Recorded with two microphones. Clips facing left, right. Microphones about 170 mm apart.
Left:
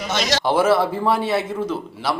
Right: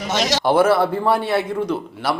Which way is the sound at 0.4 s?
Centre (ahead or behind).